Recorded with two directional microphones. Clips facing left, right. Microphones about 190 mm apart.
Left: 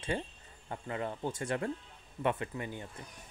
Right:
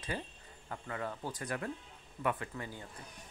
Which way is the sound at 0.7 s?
20° left (ahead or behind).